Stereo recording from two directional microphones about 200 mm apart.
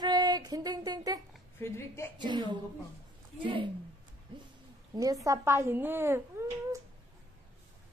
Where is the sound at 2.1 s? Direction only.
20° right (ahead or behind).